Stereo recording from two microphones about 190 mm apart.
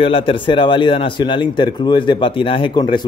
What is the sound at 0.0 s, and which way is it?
Speech, 30° left (ahead or behind).